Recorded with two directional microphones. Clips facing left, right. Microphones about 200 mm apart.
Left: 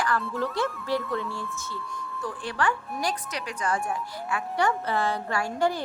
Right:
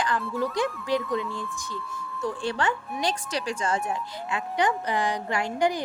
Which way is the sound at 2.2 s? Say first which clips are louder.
Right 2 dB; 25° right (ahead or behind).